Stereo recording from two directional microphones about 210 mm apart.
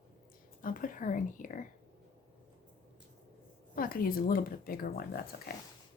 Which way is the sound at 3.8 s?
45° left (ahead or behind).